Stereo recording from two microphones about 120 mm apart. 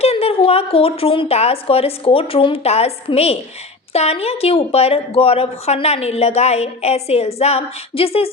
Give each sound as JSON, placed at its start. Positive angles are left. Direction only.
{"t": 0.0, "sound": "a woman's voice", "side_deg": 55}